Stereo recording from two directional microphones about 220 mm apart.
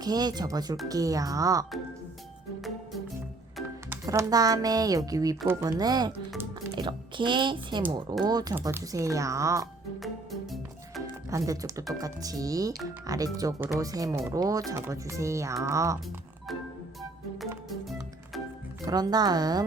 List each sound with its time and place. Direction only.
0.0 s speech: 20° right (ahead or behind)
3.8 s speech: 15° right (ahead or behind)
10.0 s music: centre (ahead or behind)
11.3 s speech: 15° right (ahead or behind)
18.9 s speech: 20° right (ahead or behind)